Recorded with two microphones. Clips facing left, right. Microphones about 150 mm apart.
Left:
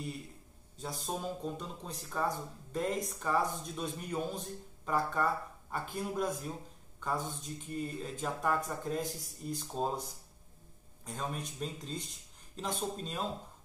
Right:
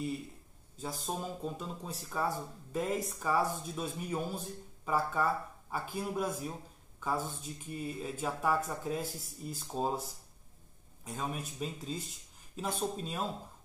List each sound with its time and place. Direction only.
0.7 s speech: centre (ahead or behind)
11.1 s speech: 5° right (ahead or behind)